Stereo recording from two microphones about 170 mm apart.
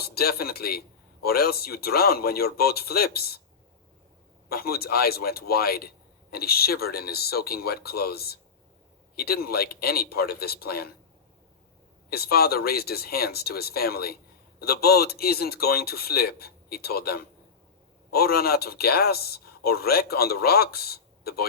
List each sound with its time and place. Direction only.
0.0 s a man's voice: 65° left (ahead or behind)
4.4 s a man's voice: 65° left (ahead or behind)
12.1 s a man's voice: 65° left (ahead or behind)